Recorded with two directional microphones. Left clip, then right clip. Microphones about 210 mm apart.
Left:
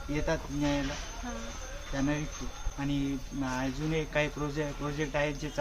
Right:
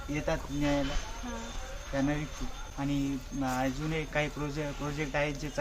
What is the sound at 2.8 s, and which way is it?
Speech, 15° right (ahead or behind).